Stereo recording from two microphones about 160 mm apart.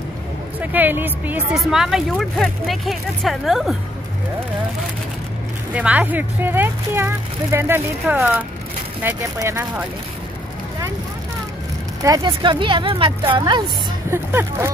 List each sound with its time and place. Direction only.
0.6 s speech: 10° right (ahead or behind)
5.8 s speech: 10° right (ahead or behind)
12.0 s speech: 25° right (ahead or behind)
14.1 s speech: 15° right (ahead or behind)